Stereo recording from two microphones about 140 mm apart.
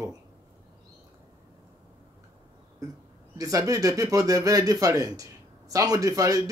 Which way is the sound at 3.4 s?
25° right (ahead or behind).